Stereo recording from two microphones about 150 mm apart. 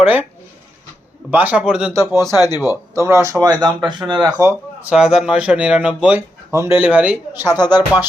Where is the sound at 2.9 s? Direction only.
20° right (ahead or behind).